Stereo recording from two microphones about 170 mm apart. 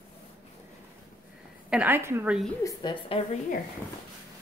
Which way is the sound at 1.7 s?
10° right (ahead or behind).